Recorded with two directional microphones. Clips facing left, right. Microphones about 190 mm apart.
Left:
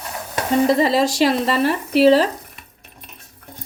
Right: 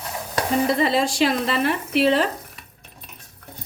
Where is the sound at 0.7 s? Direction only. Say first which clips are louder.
Left 3 dB; 40° left (ahead or behind).